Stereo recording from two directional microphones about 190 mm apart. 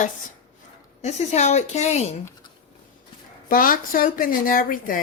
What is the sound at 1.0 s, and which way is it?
A woman's voice, 35° left (ahead or behind).